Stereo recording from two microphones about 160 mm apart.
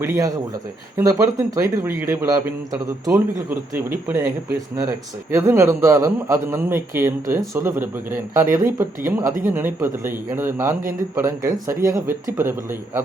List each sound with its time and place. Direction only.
0.0 s speech: 20° right (ahead or behind)
4.1 s speech: 15° right (ahead or behind)